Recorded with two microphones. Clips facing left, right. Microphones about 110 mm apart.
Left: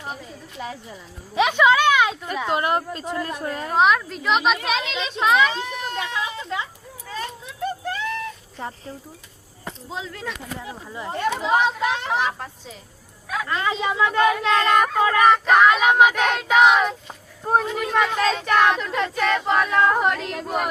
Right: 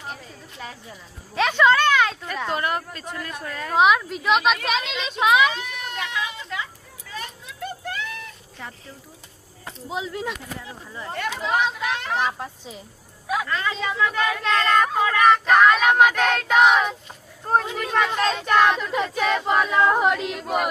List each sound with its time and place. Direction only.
0.6 s speech: 20° left (ahead or behind)
2.5 s speech: 25° left (ahead or behind)
3.8 s speech: 5° right (ahead or behind)
5.5 s speech: 30° left (ahead or behind)
7.1 s a sound: 30° left (ahead or behind)
8.6 s speech: 35° left (ahead or behind)
9.9 s speech: 15° right (ahead or behind)
10.6 s speech: 20° left (ahead or behind)
12.2 s speech: 10° right (ahead or behind)
13.5 s speech: 20° left (ahead or behind)
15.4 s speech: 5° left (ahead or behind)